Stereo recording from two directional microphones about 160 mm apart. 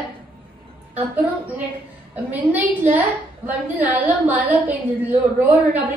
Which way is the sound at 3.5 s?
10° right (ahead or behind).